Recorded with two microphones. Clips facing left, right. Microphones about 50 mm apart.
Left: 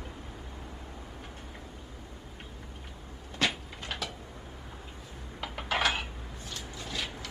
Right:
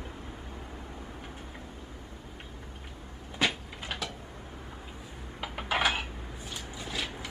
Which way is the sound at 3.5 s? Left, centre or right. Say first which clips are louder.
Right 1 dB; centre.